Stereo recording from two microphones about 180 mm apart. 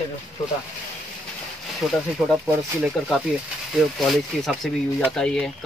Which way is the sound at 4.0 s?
Centre (ahead or behind).